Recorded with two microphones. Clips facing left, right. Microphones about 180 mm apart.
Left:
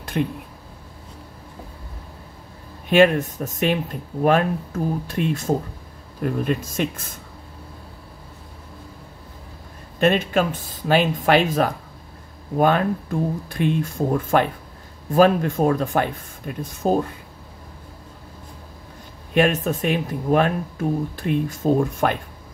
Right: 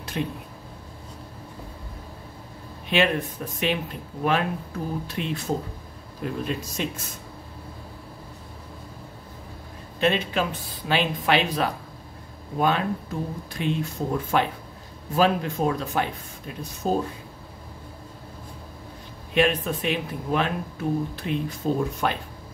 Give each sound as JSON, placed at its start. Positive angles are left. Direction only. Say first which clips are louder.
{"t": 0.2, "sound": "speech", "louder": "left 5 dB", "side_deg": 55}
{"t": 2.9, "sound": "speech", "louder": "left 7 dB", "side_deg": 45}
{"t": 9.9, "sound": "speech", "louder": "left 5 dB", "side_deg": 45}
{"t": 19.3, "sound": "speech", "louder": "left 3 dB", "side_deg": 45}